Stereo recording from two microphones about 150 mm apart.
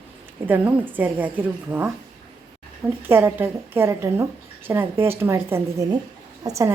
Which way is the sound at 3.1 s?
15° right (ahead or behind).